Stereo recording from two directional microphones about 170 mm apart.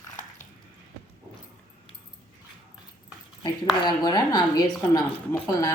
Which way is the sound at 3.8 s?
25° left (ahead or behind).